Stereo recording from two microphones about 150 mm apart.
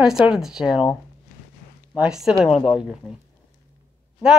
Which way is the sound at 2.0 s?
5° right (ahead or behind).